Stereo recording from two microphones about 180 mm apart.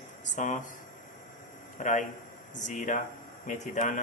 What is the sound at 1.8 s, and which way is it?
A man's voice, 45° left (ahead or behind).